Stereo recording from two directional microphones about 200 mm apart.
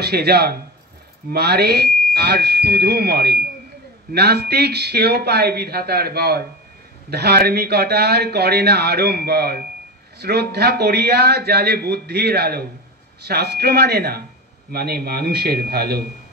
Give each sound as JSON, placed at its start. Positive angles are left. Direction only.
{"t": 0.0, "sound": "speech", "side_deg": -55}